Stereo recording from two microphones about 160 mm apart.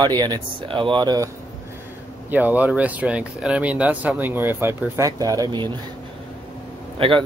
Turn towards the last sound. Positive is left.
turn(degrees=-35)  # may be behind; listen again after turning